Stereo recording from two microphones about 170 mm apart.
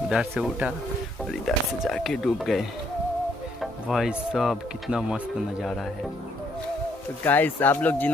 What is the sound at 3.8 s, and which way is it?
Speech, 5° right (ahead or behind).